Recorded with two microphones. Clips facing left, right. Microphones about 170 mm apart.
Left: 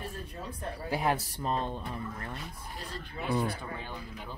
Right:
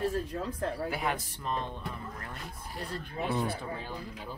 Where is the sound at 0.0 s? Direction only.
90° right.